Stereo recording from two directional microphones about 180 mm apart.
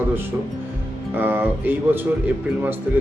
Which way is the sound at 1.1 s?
10° right (ahead or behind).